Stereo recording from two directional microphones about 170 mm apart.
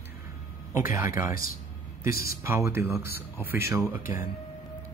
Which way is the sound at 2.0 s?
60° left (ahead or behind).